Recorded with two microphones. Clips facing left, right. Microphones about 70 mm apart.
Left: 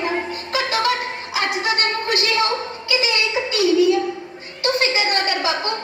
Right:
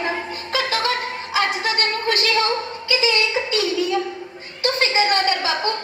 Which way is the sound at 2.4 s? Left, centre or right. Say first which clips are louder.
Left 1 dB; right.